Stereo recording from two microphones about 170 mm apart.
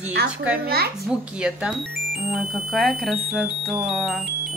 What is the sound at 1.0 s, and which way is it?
Speech, 5° right (ahead or behind).